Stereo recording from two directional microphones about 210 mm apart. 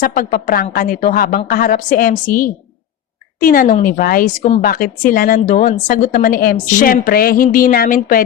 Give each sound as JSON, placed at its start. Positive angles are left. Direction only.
{"t": 0.0, "sound": "a woman's voice", "side_deg": 40}